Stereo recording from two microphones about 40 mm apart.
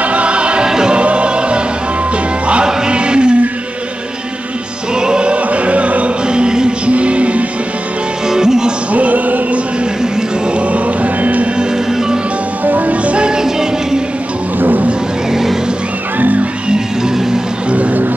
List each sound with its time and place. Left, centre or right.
0.0 s music: right
0.7 s music: centre
0.9 s music: right
5.0 s music: right
6.2 s music: right
8.3 s music: centre
8.9 s music: right
10.7 s music: right
12.6 s music: right; by 13.7 s centre
14.6 s a sound: right
16.2 s music: right